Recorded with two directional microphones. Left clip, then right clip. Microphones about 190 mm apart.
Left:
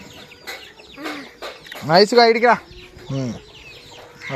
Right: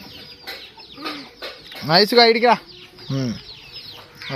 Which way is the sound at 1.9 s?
Centre (ahead or behind).